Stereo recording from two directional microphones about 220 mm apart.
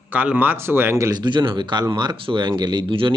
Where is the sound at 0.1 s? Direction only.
5° right (ahead or behind).